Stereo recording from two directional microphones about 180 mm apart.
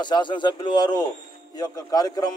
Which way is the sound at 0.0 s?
25° left (ahead or behind).